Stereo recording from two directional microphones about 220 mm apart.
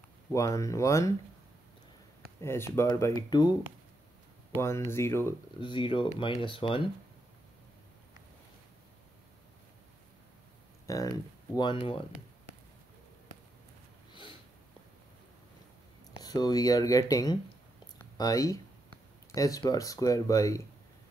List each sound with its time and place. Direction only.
0.3 s speech: 15° left (ahead or behind)
2.4 s speech: 10° left (ahead or behind)
4.6 s speech: 10° left (ahead or behind)
10.9 s speech: 15° left (ahead or behind)
16.2 s speech: 20° left (ahead or behind)
17.9 s a sound: 15° left (ahead or behind)
19.3 s speech: 15° left (ahead or behind)